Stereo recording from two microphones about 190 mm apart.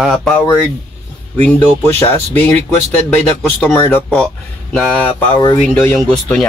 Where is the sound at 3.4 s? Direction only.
5° left (ahead or behind).